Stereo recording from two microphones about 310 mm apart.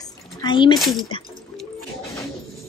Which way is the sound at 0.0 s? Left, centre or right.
Centre.